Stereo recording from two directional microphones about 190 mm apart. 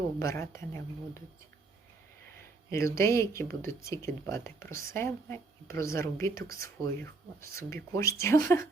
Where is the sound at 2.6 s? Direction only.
15° left (ahead or behind).